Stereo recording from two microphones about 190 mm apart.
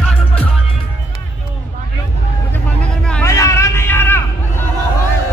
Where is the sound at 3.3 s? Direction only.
15° left (ahead or behind).